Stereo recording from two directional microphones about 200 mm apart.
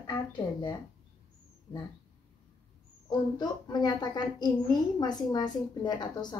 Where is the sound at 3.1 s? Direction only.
20° left (ahead or behind).